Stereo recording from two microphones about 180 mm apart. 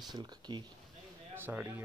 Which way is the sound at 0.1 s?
25° right (ahead or behind).